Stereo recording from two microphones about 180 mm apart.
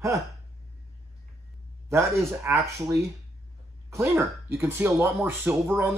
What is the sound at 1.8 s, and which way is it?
Speech, 15° right (ahead or behind).